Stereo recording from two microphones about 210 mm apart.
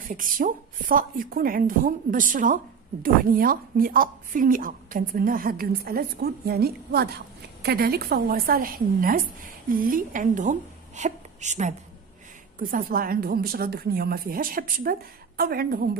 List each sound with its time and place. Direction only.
0.1 s a woman's voice: 40° right (ahead or behind)